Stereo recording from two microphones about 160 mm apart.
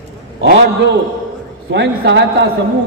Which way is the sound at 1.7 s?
90° right.